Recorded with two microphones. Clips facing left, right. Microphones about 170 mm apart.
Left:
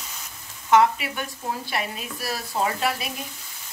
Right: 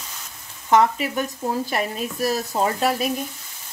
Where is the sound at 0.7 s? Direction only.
40° right (ahead or behind).